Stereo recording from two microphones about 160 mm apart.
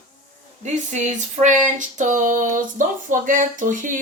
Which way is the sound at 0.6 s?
50° right (ahead or behind).